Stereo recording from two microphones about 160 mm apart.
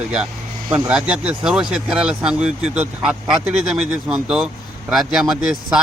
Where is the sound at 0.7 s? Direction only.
5° right (ahead or behind).